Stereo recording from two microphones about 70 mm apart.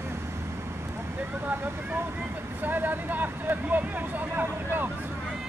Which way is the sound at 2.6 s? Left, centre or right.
Right.